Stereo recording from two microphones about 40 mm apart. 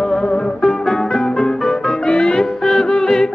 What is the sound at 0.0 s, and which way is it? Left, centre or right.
Music, centre.